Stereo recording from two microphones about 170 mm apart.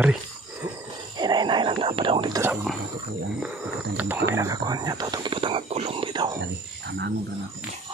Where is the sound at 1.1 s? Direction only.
25° right (ahead or behind).